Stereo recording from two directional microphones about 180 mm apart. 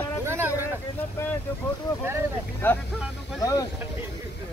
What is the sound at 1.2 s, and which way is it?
Boat, 15° left (ahead or behind).